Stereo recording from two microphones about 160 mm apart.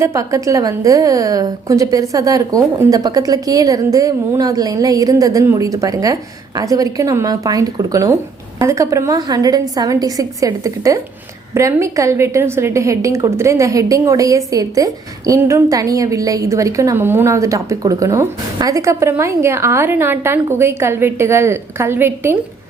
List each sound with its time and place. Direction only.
0.0 s a woman's voice: 20° right (ahead or behind)